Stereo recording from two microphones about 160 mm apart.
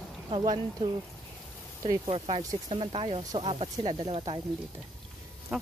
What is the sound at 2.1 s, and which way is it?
Speech, 40° right (ahead or behind).